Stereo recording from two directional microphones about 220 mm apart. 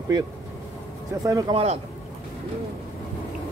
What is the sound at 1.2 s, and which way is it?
Speech, 15° right (ahead or behind).